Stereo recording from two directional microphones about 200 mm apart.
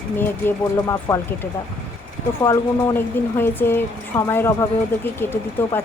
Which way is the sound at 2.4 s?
10° left (ahead or behind).